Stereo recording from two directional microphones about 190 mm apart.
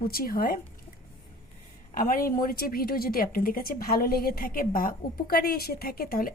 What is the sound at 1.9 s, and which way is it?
Speech, 45° left (ahead or behind).